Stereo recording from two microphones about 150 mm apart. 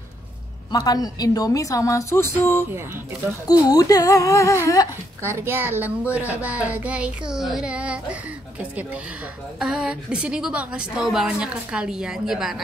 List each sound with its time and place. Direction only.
0.7 s a woman's voice: 25° left (ahead or behind)
5.2 s a child's voice: 15° right (ahead or behind)